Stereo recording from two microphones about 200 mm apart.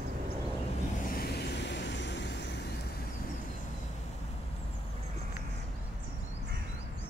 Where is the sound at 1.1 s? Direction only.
50° left (ahead or behind).